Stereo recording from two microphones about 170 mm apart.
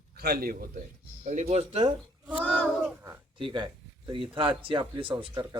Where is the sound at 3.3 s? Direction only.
30° right (ahead or behind).